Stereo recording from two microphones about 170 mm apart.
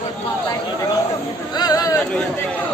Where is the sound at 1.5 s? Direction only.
25° left (ahead or behind).